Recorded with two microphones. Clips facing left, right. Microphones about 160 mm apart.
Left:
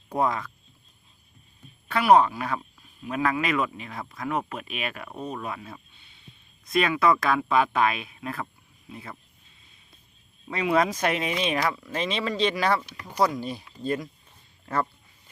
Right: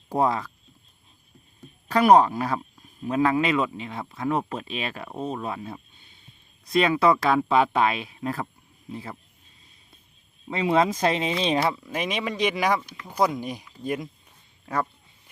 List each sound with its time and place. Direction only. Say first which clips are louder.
0.1 s speech: right 2 dB; 30° right (ahead or behind)
1.9 s speech: right 2 dB; 40° right (ahead or behind)
10.5 s speech: right 2 dB; 25° right (ahead or behind)
11.8 s speech: even; 15° right (ahead or behind)